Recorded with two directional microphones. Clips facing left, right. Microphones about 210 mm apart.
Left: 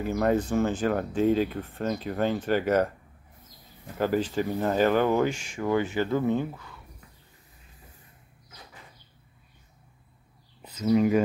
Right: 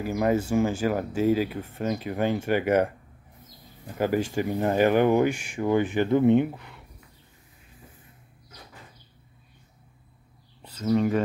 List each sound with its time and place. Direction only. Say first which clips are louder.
0.0 s speech: even; 10° right (ahead or behind)
4.0 s speech: right 1 dB; 10° right (ahead or behind)
10.6 s speech: left 1 dB; 10° left (ahead or behind)